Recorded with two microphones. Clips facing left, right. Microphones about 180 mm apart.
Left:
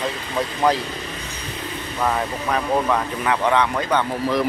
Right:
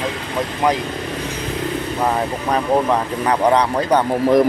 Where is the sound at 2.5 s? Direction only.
35° right (ahead or behind).